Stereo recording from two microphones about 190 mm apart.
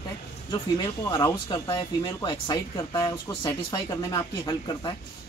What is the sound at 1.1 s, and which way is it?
Speech, 20° left (ahead or behind).